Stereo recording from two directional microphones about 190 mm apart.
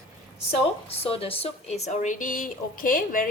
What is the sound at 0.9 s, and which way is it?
Speech, 30° left (ahead or behind).